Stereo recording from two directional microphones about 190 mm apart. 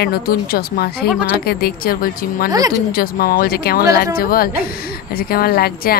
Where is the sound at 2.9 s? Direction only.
50° left (ahead or behind).